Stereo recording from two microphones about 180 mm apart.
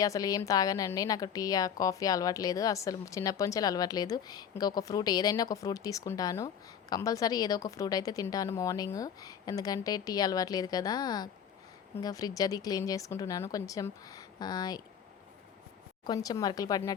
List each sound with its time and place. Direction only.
0.0 s a woman's voice: 20° left (ahead or behind)
16.0 s a woman's voice: 20° left (ahead or behind)